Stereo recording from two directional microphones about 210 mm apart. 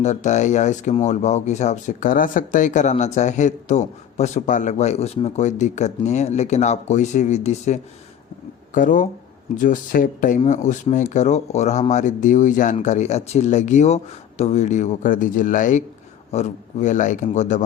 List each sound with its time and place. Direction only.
0.0 s speech: 35° left (ahead or behind)